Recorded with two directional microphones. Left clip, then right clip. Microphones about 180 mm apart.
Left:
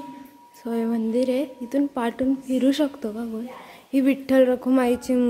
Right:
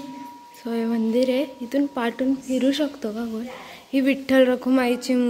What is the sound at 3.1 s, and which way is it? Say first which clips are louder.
Speech: right 2 dB; 5° left (ahead or behind).